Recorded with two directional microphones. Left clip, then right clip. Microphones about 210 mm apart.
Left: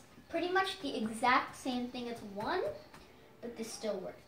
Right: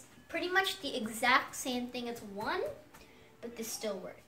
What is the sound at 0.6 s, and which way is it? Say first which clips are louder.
A woman's voice: right 5 dB; 15° right (ahead or behind).